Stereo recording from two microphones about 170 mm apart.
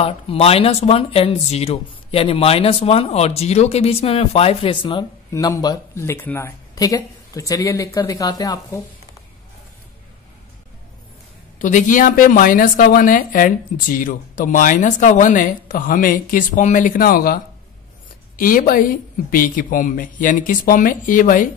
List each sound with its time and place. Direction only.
0.0 s speech: 35° left (ahead or behind)
5.3 s speech: 20° left (ahead or behind)
11.5 s a woman's voice: 50° left (ahead or behind)